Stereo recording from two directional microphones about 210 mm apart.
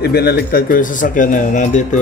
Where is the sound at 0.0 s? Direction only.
50° left (ahead or behind).